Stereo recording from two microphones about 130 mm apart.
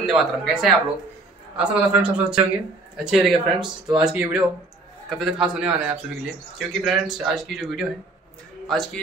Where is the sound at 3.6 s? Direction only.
35° right (ahead or behind).